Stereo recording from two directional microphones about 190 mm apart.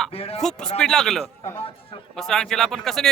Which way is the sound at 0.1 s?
30° left (ahead or behind).